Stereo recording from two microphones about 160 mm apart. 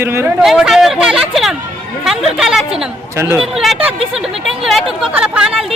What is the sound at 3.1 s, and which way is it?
Speech, 15° right (ahead or behind).